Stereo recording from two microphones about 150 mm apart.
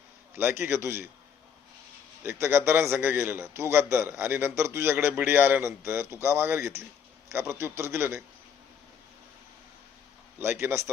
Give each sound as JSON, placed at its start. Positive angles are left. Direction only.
{"t": 0.3, "sound": "a man's voice", "side_deg": -15}
{"t": 2.2, "sound": "a man's voice", "side_deg": -15}
{"t": 10.4, "sound": "a man's voice", "side_deg": -15}